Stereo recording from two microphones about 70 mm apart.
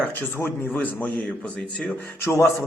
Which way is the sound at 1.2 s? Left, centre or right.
Centre.